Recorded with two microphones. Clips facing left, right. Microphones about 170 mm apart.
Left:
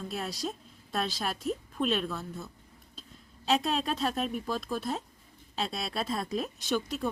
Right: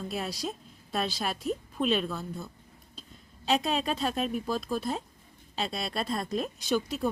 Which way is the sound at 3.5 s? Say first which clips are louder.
Right 1 dB; centre (ahead or behind).